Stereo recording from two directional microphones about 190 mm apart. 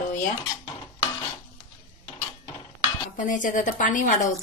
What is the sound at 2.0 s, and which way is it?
Mechanisms, 20° left (ahead or behind).